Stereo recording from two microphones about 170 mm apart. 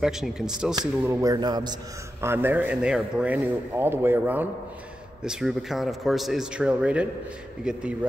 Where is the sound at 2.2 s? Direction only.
15° right (ahead or behind).